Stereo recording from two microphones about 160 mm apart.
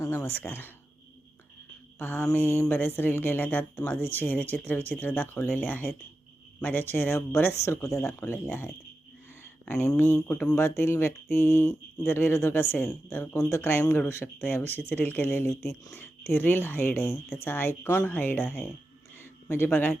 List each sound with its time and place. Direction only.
0.0 s speech: 15° left (ahead or behind)
2.0 s speech: 10° left (ahead or behind)